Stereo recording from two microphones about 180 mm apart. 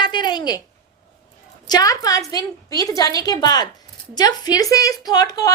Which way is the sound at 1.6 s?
20° left (ahead or behind).